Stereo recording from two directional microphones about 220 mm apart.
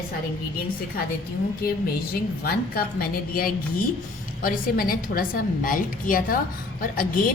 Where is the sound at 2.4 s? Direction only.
40° left (ahead or behind).